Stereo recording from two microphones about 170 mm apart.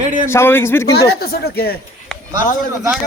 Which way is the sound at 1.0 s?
65° left (ahead or behind).